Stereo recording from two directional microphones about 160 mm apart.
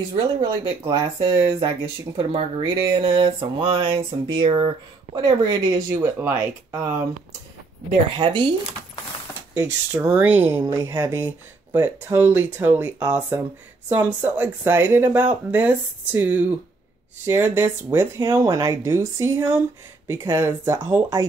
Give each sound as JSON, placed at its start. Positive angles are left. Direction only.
{"t": 0.1, "sound": "speech", "side_deg": -30}
{"t": 8.2, "sound": "speech", "side_deg": -30}
{"t": 9.9, "sound": "speech", "side_deg": -10}